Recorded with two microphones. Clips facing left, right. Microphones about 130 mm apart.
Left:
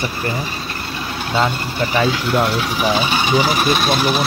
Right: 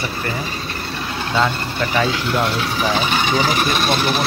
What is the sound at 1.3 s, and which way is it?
Speech, 20° left (ahead or behind).